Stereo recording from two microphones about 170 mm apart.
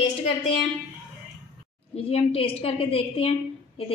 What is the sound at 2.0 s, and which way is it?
A woman's voice, 35° left (ahead or behind).